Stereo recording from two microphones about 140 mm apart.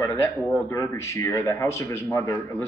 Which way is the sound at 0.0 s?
20° left (ahead or behind).